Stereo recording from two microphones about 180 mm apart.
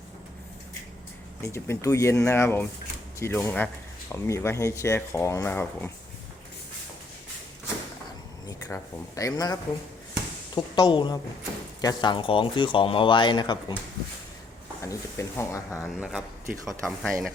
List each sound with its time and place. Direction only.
1.4 s speech: 15° left (ahead or behind)
8.4 s speech: 15° left (ahead or behind)
14.8 s speech: 15° left (ahead or behind)
15.8 s a man's voice: 5° right (ahead or behind)